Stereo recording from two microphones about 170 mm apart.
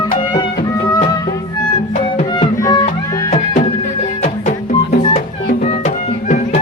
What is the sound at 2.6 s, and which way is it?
Music, 20° left (ahead or behind).